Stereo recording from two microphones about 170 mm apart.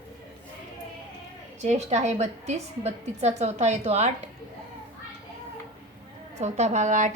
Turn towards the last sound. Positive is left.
turn(degrees=-45)  # may be behind; listen again after turning